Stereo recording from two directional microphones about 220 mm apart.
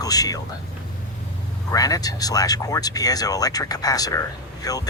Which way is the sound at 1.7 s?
15° left (ahead or behind).